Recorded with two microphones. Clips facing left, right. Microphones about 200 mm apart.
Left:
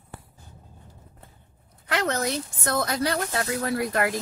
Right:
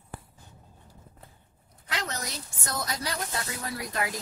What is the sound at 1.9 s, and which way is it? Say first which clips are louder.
Speech: left 10 dB; 60° left (ahead or behind).